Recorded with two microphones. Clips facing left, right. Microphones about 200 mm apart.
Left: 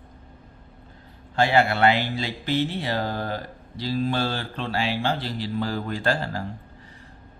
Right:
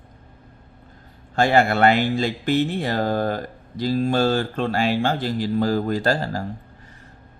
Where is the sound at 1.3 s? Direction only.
45° right (ahead or behind).